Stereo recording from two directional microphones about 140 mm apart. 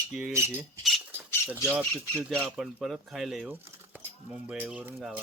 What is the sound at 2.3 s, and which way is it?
Speech, 10° right (ahead or behind).